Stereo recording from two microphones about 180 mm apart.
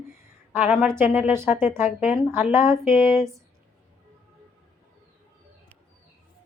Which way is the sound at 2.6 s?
Centre (ahead or behind).